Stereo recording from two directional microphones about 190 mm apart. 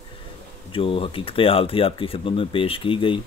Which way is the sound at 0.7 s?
30° left (ahead or behind).